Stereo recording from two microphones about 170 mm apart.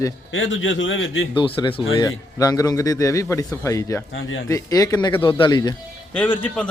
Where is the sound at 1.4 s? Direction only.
30° left (ahead or behind).